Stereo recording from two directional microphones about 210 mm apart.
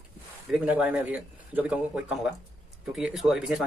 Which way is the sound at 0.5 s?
5° right (ahead or behind).